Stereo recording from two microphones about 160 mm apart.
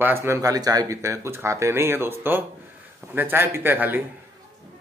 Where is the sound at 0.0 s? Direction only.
15° right (ahead or behind).